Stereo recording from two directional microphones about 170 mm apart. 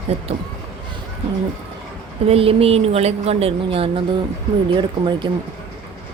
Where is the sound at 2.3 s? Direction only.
35° right (ahead or behind).